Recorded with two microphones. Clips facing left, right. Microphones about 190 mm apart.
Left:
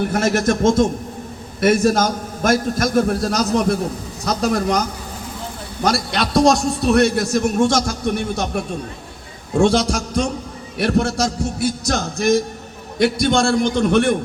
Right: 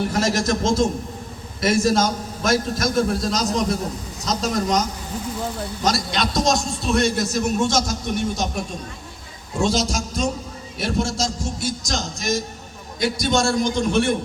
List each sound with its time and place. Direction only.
0.1 s a man's voice: 55° left (ahead or behind)
5.8 s a man's voice: 55° left (ahead or behind)